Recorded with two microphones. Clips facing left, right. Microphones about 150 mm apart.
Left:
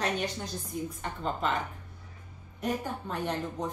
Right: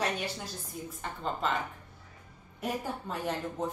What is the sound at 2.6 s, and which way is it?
Speech, 5° right (ahead or behind).